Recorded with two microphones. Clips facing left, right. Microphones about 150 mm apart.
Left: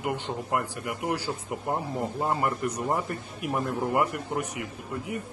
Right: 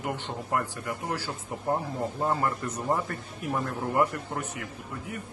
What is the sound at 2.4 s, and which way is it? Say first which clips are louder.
A man's voice: left 2 dB; 15° left (ahead or behind).